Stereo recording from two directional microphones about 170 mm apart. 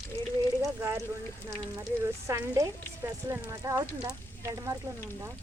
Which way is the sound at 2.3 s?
20° right (ahead or behind).